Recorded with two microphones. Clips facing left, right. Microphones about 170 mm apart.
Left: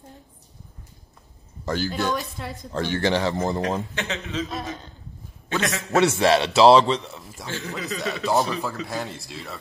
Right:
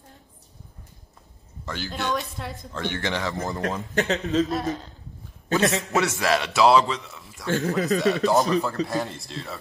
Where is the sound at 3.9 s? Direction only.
40° right (ahead or behind).